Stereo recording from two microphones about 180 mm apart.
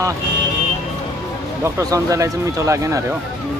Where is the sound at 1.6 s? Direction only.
20° right (ahead or behind).